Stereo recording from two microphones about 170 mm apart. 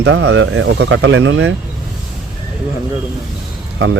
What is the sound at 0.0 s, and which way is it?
Speech, 90° right.